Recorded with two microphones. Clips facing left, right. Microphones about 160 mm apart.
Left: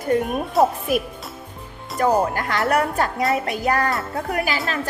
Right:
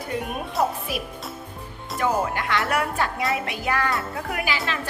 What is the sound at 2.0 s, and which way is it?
Speech, 40° left (ahead or behind).